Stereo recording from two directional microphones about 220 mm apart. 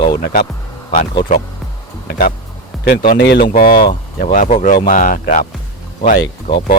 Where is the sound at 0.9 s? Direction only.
25° left (ahead or behind).